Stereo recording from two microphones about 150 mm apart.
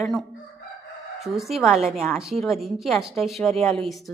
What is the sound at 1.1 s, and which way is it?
Chicken, centre (ahead or behind).